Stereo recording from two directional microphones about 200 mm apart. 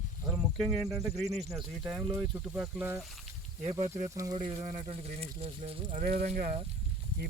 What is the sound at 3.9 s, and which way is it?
Speech, 15° right (ahead or behind).